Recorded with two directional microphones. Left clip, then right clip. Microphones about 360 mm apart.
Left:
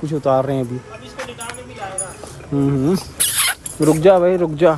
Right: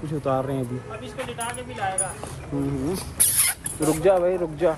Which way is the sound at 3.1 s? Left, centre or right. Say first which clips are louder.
Left 7 dB; left.